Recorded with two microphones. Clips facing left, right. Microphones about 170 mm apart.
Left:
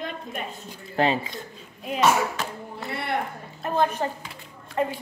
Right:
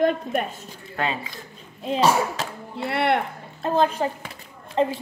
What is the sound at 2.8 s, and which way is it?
Speech, 70° right (ahead or behind).